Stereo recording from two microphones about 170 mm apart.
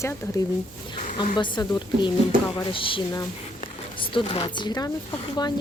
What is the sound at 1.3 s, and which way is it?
A woman's voice, 25° left (ahead or behind).